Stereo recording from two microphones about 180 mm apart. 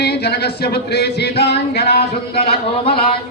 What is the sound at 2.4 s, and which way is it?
Speech, 30° left (ahead or behind).